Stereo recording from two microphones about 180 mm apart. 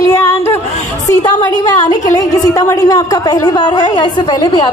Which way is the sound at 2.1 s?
20° left (ahead or behind).